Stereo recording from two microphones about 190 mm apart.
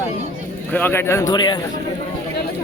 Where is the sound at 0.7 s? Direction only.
10° left (ahead or behind).